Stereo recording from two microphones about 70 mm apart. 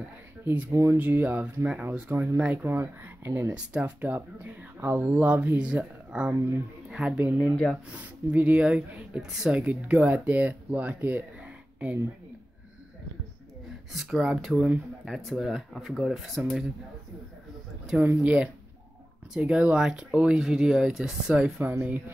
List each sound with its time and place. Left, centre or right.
0.5 s speech: right
3.5 s speech: centre
4.0 s speech: right
6.9 s a sound: centre
7.2 s speech: right
13.9 s speech: centre
18.0 s speech: centre